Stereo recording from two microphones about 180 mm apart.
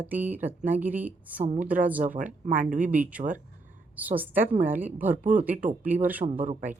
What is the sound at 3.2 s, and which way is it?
Speech, 35° right (ahead or behind).